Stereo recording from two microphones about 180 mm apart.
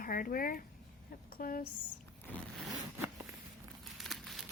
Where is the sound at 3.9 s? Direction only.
Centre (ahead or behind).